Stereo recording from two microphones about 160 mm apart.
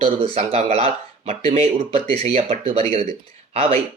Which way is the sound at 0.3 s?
40° right (ahead or behind).